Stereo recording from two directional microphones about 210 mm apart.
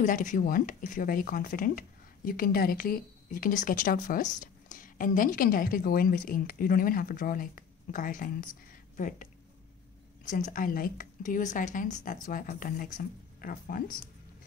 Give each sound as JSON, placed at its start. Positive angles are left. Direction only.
{"t": 0.0, "sound": "speech", "side_deg": 35}